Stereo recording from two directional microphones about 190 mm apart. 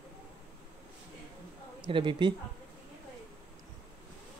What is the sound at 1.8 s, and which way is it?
Speech, 25° right (ahead or behind).